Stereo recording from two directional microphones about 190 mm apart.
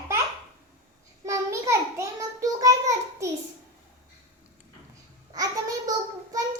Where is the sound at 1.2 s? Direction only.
15° right (ahead or behind).